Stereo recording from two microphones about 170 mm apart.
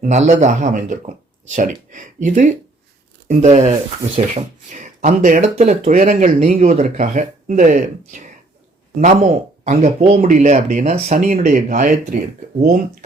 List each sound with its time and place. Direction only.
0.0 s speech: 45° right (ahead or behind)